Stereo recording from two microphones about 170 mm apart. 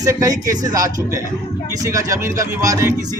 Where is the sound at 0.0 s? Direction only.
20° right (ahead or behind).